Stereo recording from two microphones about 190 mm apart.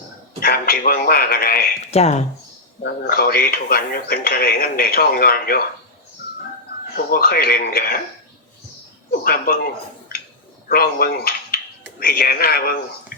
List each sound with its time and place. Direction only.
0.3 s speech: 50° left (ahead or behind)
1.8 s speech: 35° left (ahead or behind)
2.8 s speech: 55° left (ahead or behind)
6.9 s speech: 55° left (ahead or behind)
9.2 s speech: 50° left (ahead or behind)
10.7 s speech: 55° left (ahead or behind)